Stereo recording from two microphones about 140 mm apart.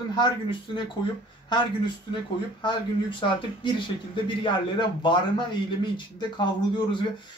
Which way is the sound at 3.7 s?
35° left (ahead or behind).